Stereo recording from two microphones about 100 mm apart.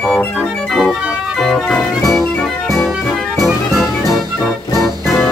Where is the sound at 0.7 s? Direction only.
Centre (ahead or behind).